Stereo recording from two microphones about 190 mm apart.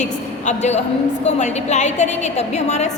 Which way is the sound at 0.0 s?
40° left (ahead or behind).